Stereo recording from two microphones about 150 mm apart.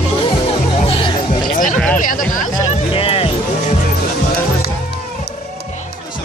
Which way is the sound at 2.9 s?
40° left (ahead or behind).